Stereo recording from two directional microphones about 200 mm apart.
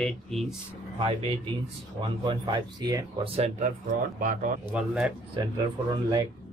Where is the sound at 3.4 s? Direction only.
40° right (ahead or behind).